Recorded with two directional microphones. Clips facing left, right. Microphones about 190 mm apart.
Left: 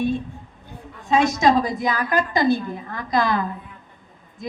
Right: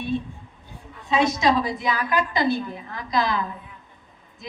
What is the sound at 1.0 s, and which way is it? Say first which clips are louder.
A man's voice: left 3 dB; 45° left (ahead or behind).